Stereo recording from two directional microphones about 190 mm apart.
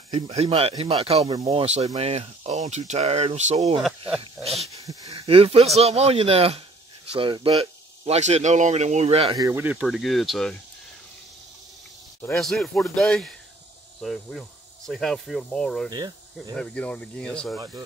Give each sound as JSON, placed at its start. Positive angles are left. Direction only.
{"t": 0.1, "sound": "speech", "side_deg": -35}
{"t": 4.7, "sound": "a sound", "side_deg": -20}
{"t": 5.3, "sound": "speech", "side_deg": -30}
{"t": 9.3, "sound": "speech", "side_deg": -15}
{"t": 12.4, "sound": "speech", "side_deg": 0}
{"t": 15.9, "sound": "speech", "side_deg": -20}
{"t": 16.5, "sound": "speech", "side_deg": 5}